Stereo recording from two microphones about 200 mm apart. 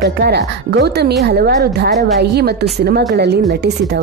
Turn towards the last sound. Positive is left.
turn(degrees=-55)  # may be behind; listen again after turning